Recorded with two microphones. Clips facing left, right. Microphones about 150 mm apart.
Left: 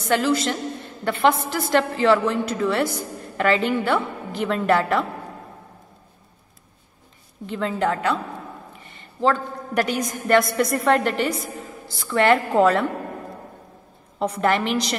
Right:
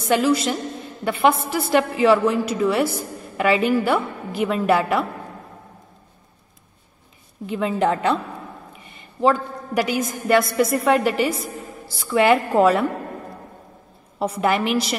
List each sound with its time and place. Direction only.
0.0 s a woman's voice: 10° right (ahead or behind)
7.4 s a woman's voice: 15° right (ahead or behind)
9.2 s a woman's voice: 10° right (ahead or behind)
14.2 s a woman's voice: 10° right (ahead or behind)